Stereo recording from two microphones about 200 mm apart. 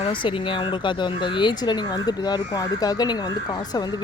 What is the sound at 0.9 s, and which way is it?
Speech, 25° left (ahead or behind).